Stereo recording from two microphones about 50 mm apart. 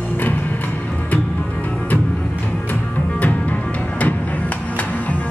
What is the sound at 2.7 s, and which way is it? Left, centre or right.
Music, left.